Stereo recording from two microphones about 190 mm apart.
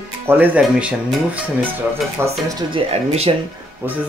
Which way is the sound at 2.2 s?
20° right (ahead or behind).